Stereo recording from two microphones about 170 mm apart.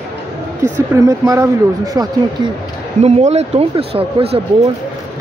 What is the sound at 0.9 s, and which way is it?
Speech, 20° right (ahead or behind).